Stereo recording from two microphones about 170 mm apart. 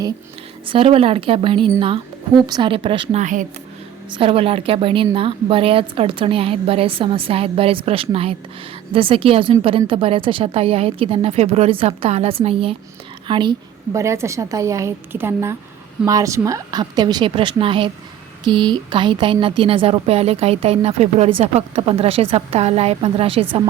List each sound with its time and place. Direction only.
0.7 s a woman's voice: 35° right (ahead or behind)
3.2 s speech: 45° right (ahead or behind)
4.2 s a woman's voice: 35° right (ahead or behind)